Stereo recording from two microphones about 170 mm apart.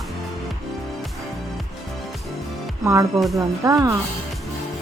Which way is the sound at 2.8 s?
15° right (ahead or behind).